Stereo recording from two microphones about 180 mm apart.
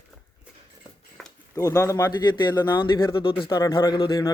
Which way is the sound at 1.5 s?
20° left (ahead or behind).